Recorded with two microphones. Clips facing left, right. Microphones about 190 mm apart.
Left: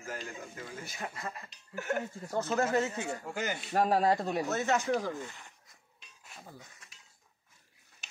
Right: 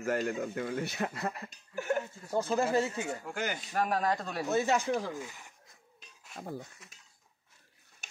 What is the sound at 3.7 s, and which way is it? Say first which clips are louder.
Speech: left 4 dB; 30° left (ahead or behind).